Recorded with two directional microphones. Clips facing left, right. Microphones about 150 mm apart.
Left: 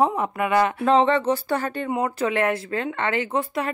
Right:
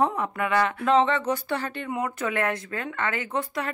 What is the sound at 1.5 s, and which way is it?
Speech, 45° left (ahead or behind).